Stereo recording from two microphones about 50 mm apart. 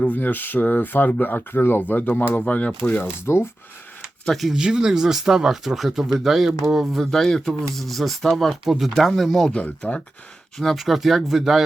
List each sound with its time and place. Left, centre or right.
0.1 s speech: left
2.4 s speech: left
3.0 s speech: left
4.3 s speech: centre
4.5 s speech: centre
7.0 s speech: centre
9.8 s speech: left
10.8 s speech: centre